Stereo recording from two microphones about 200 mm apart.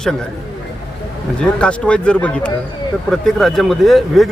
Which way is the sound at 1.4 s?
5° left (ahead or behind).